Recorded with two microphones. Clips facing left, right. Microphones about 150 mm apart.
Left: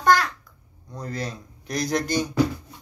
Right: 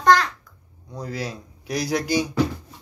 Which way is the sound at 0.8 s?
10° right (ahead or behind).